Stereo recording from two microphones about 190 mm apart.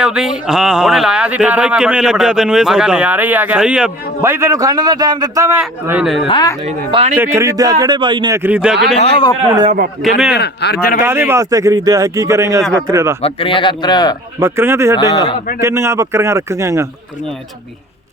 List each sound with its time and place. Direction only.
0.0 s speech: 5° right (ahead or behind)
6.2 s speech: 20° left (ahead or behind)
6.7 s speech: 35° right (ahead or behind)
7.3 s speech: 20° right (ahead or behind)
8.4 s speech: 10° right (ahead or behind)
9.0 s speech: 30° left (ahead or behind)
10.3 s speech: 60° left (ahead or behind)
11.0 s speech: 10° right (ahead or behind)
13.2 s speech: 25° left (ahead or behind)
14.3 s speech: 10° right (ahead or behind)
14.9 s speech: 20° left (ahead or behind)
15.6 s speech: 15° right (ahead or behind)